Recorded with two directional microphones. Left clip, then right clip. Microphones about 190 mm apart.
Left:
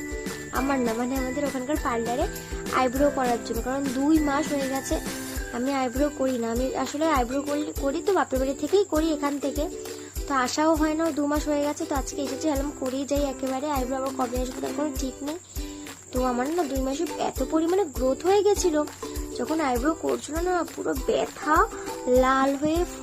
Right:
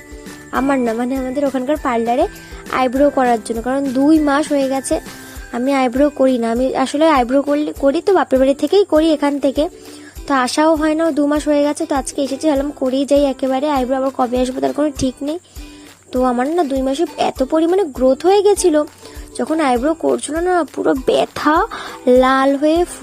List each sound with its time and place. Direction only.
0.5 s speech: 40° right (ahead or behind)
16.2 s speech: 40° right (ahead or behind)